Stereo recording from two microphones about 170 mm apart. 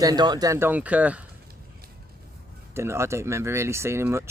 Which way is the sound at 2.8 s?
15° right (ahead or behind).